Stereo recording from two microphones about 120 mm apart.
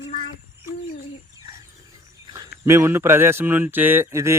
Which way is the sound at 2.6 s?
20° right (ahead or behind).